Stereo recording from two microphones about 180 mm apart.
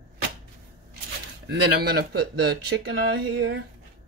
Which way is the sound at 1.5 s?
60° right (ahead or behind).